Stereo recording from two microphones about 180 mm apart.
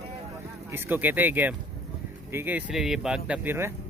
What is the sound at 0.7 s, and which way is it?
Speech, 10° right (ahead or behind).